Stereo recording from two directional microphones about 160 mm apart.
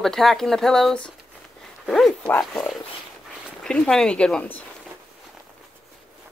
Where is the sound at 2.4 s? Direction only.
Centre (ahead or behind).